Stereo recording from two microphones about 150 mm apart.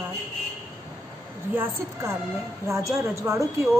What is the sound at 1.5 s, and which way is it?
A woman's voice, 15° right (ahead or behind).